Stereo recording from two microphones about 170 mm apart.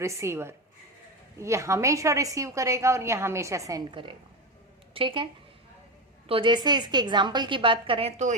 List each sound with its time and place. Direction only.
0.0 s a woman's voice: 15° right (ahead or behind); by 8.4 s 45° right (ahead or behind)